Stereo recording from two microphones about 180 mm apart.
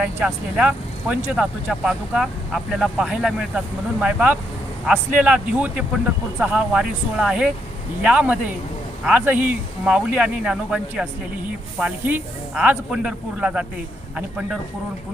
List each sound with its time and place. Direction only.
0.0 s speech: 10° right (ahead or behind)